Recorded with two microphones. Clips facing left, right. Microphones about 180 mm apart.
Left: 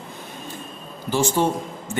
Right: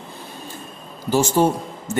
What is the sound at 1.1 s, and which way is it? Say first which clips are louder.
Speech: right 3 dB; 40° right (ahead or behind).